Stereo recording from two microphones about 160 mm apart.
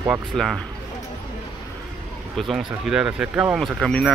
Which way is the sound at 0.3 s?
Centre (ahead or behind).